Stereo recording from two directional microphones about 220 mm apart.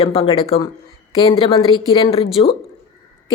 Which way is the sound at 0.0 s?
25° left (ahead or behind).